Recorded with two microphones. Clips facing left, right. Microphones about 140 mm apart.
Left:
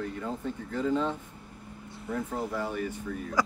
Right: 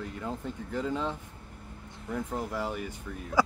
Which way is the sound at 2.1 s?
10° right (ahead or behind).